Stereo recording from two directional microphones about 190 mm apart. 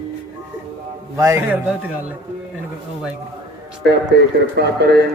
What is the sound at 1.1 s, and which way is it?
Speech, 15° right (ahead or behind).